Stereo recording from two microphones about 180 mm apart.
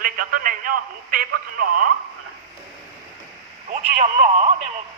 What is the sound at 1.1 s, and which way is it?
Speech, 55° right (ahead or behind).